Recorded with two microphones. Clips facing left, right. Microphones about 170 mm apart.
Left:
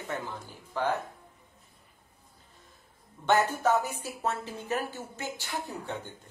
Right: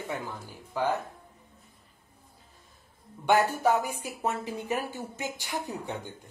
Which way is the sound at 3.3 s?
10° right (ahead or behind).